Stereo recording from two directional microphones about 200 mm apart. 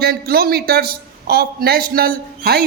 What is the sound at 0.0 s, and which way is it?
A man's voice, 50° right (ahead or behind).